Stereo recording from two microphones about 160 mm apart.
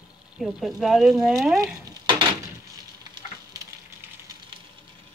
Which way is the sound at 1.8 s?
30° right (ahead or behind).